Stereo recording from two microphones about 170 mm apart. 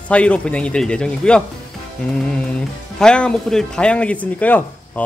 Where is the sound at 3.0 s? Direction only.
5° left (ahead or behind).